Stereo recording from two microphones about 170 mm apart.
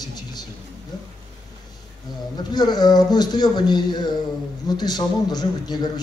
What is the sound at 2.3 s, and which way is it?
A man's voice, 25° left (ahead or behind).